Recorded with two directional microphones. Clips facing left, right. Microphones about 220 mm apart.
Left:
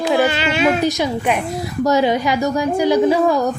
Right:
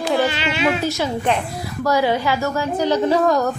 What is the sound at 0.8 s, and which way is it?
A woman's voice, 15° left (ahead or behind).